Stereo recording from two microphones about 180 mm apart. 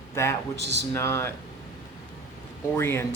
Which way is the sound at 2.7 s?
15° left (ahead or behind).